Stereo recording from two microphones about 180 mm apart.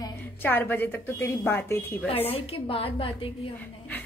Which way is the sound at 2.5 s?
30° left (ahead or behind).